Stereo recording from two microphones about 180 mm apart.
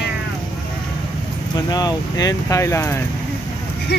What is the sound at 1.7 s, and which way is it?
Speech, 20° left (ahead or behind).